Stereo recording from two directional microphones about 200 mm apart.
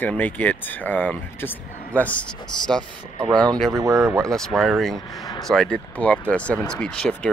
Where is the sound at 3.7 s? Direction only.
15° right (ahead or behind).